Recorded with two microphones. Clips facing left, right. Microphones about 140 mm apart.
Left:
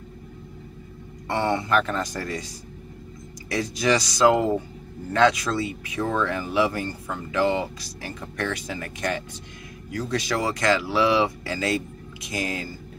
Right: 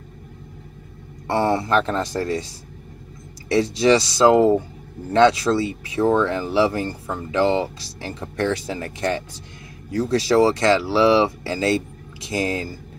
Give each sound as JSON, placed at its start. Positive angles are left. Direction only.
{"t": 1.2, "sound": "speech", "side_deg": -35}